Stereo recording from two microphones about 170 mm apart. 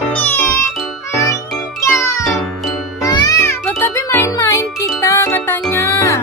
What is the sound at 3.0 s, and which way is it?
Music, 20° left (ahead or behind).